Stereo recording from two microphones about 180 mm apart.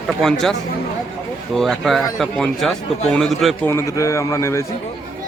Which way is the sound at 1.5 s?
Centre (ahead or behind).